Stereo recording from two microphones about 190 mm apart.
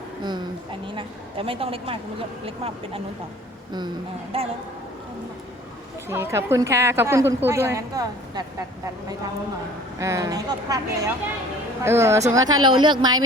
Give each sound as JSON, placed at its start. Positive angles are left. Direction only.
{"t": 0.2, "sound": "a woman's voice", "side_deg": -25}
{"t": 4.3, "sound": "speech", "side_deg": -30}
{"t": 6.1, "sound": "a woman's voice", "side_deg": -15}
{"t": 10.0, "sound": "a woman's voice", "side_deg": -15}